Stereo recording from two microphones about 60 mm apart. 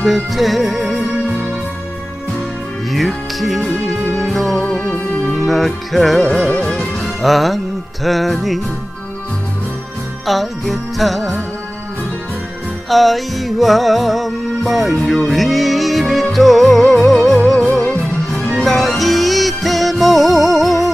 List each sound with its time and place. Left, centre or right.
0.1 s music: centre
2.9 s music: centre
4.8 s music: left
5.3 s music: centre
7.2 s music: centre
10.2 s music: centre
12.9 s music: centre